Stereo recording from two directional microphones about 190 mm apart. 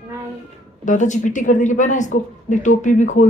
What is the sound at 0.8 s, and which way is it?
Speech, 40° left (ahead or behind).